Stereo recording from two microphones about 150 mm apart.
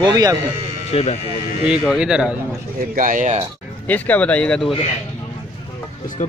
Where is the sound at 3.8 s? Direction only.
10° left (ahead or behind).